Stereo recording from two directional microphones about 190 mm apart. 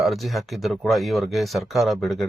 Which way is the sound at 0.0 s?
Centre (ahead or behind).